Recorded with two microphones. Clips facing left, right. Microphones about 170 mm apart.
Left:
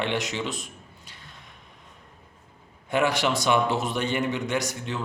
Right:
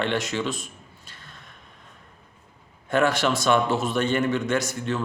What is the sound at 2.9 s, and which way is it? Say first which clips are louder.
A man's voice: right 2 dB; 15° left (ahead or behind).